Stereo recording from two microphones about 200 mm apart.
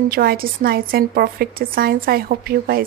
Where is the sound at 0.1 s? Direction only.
50° right (ahead or behind).